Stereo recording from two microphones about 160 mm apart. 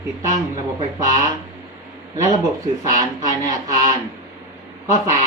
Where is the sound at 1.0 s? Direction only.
20° right (ahead or behind).